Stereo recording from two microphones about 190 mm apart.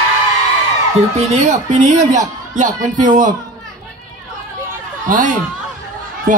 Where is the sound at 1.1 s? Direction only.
35° right (ahead or behind).